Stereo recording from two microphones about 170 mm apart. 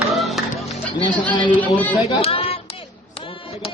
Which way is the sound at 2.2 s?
35° left (ahead or behind).